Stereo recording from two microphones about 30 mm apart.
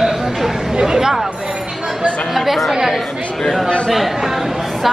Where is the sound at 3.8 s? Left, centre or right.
Centre.